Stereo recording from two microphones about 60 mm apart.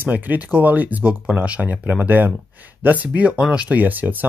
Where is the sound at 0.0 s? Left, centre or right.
Right.